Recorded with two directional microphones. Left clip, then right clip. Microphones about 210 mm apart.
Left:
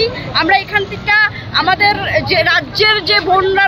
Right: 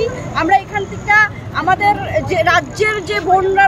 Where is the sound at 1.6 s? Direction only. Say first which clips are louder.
Left 1 dB; 5° right (ahead or behind).